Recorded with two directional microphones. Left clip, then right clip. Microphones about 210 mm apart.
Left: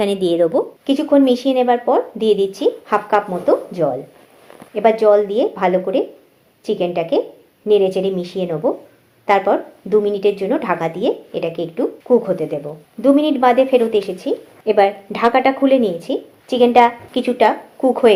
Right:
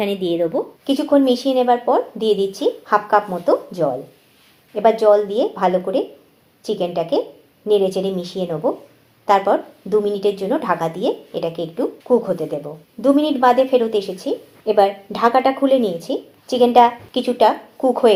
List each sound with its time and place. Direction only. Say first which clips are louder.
0.0 s a woman's voice: left 4 dB; 25° left (ahead or behind)